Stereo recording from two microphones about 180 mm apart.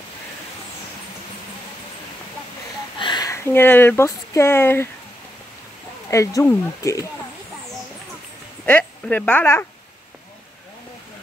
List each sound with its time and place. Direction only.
3.0 s speech: 25° left (ahead or behind)
6.0 s speech: 15° left (ahead or behind)
8.6 s speech: 10° left (ahead or behind)